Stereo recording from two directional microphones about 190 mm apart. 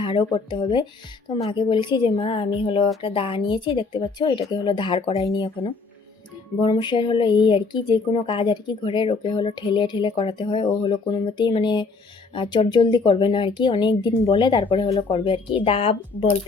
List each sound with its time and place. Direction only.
0.0 s speech: 25° left (ahead or behind)